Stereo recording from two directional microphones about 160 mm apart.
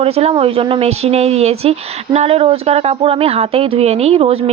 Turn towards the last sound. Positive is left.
turn(degrees=-40)  # may be behind; listen again after turning